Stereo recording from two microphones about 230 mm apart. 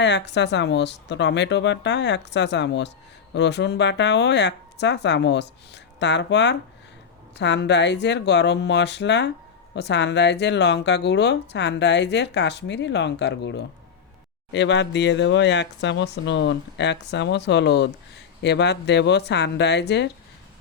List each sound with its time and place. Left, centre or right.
0.0 s speech: left